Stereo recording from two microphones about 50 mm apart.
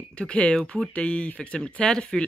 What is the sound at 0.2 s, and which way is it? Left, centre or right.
Speech, left.